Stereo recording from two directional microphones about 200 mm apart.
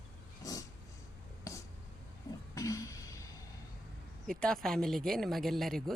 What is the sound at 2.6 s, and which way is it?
Music, 15° left (ahead or behind).